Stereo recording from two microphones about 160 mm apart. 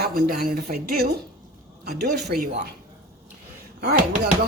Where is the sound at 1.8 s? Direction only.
85° right.